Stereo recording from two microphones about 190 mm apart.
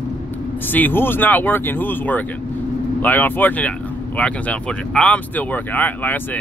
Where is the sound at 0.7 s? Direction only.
10° left (ahead or behind).